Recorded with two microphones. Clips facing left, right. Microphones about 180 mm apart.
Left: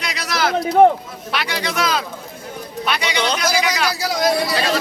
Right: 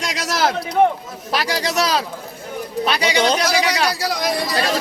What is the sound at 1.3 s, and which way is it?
A man's voice, 40° right (ahead or behind).